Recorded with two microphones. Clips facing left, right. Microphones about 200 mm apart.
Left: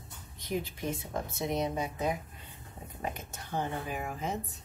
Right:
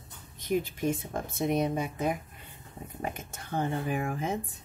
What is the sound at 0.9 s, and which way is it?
Speech, 50° right (ahead or behind).